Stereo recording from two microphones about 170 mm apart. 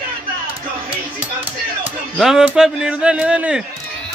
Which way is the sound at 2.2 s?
5° right (ahead or behind).